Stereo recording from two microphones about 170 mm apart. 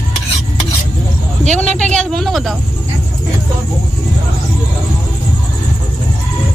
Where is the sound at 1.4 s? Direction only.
45° right (ahead or behind).